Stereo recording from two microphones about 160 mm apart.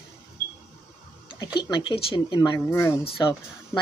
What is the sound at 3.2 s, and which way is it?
Speech, 25° left (ahead or behind).